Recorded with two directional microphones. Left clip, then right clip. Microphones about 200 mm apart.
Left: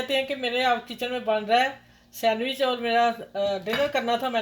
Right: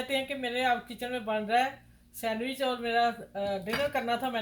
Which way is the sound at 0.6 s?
50° left (ahead or behind).